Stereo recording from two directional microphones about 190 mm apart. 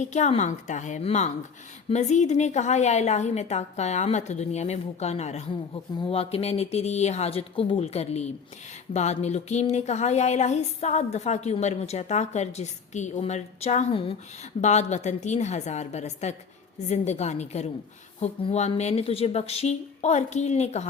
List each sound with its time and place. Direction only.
0.0 s speech: 40° left (ahead or behind)